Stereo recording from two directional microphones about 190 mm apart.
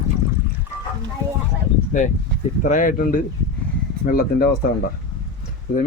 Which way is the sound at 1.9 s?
40° left (ahead or behind).